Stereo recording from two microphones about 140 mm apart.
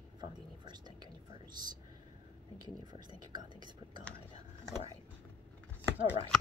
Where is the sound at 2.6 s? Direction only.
30° right (ahead or behind).